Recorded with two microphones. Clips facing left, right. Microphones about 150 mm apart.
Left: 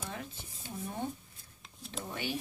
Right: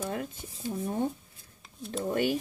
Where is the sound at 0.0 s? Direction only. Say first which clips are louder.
Right 9 dB; 45° right (ahead or behind).